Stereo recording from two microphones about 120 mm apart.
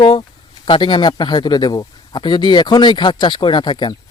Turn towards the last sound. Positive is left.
turn(degrees=40)  # may be behind; listen again after turning